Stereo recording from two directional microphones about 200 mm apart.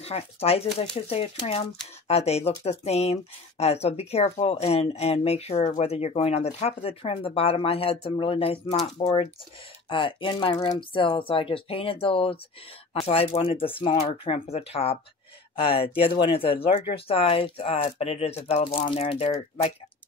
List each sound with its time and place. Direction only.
0.0 s speech: 30° left (ahead or behind)